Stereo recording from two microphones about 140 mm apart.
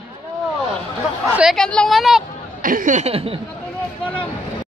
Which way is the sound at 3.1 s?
40° right (ahead or behind).